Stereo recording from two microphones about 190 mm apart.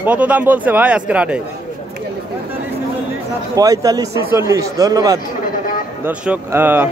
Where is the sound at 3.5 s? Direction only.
20° right (ahead or behind).